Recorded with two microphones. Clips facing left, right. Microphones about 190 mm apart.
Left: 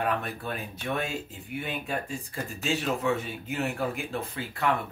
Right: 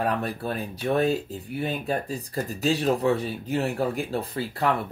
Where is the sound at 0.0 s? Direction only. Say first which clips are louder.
Right 3 dB; 35° right (ahead or behind).